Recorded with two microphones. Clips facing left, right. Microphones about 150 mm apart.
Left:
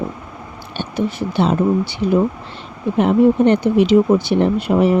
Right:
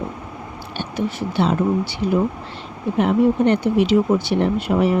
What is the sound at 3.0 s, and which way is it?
Speech, 20° left (ahead or behind).